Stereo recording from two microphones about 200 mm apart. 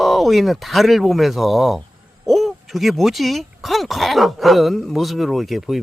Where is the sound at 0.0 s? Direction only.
Centre (ahead or behind).